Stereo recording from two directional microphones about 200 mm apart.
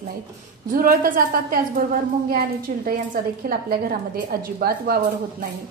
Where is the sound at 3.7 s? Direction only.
50° right (ahead or behind).